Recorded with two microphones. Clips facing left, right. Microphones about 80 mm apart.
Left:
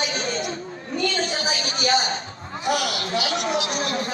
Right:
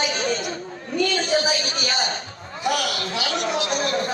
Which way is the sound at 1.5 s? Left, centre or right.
Left.